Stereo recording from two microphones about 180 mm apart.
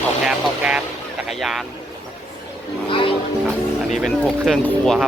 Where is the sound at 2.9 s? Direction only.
30° left (ahead or behind).